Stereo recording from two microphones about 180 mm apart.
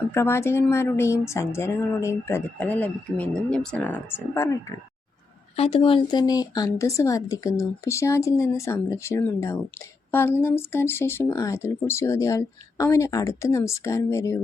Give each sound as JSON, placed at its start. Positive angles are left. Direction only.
{"t": 0.1, "sound": "speech", "side_deg": 15}
{"t": 5.5, "sound": "speech", "side_deg": 30}